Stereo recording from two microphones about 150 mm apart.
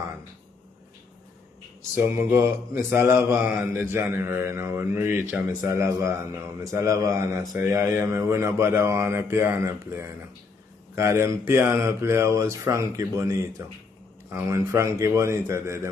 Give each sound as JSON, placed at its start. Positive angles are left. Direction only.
{"t": 2.0, "sound": "mantra", "side_deg": -15}
{"t": 5.3, "sound": "speech", "side_deg": -20}
{"t": 7.7, "sound": "mantra", "side_deg": -20}
{"t": 11.0, "sound": "speech", "side_deg": -20}
{"t": 14.7, "sound": "speech", "side_deg": -20}